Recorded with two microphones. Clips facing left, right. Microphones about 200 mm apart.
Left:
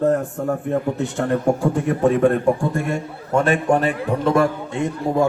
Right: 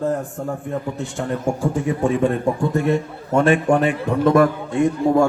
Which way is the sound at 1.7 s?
65° left (ahead or behind).